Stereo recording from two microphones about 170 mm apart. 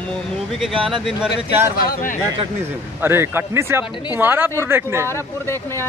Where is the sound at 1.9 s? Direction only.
55° left (ahead or behind).